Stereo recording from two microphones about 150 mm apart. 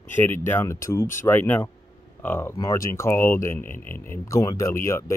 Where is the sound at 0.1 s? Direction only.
15° left (ahead or behind).